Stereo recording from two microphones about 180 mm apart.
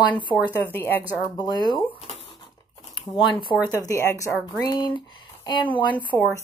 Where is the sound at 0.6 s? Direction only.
10° left (ahead or behind).